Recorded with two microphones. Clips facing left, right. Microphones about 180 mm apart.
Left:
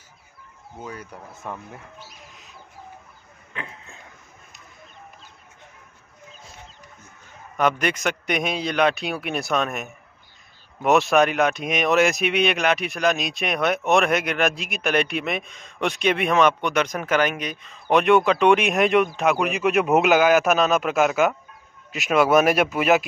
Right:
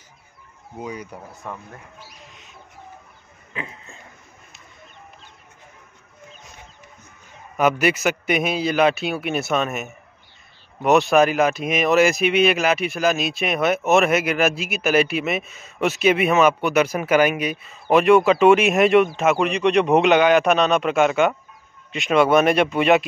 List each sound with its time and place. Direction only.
0.7 s speech: 15° right (ahead or behind)
1.3 s speech: centre (ahead or behind)
2.2 s chicken: centre (ahead or behind)
3.5 s a sound: centre (ahead or behind)
7.5 s speech: 5° right (ahead or behind)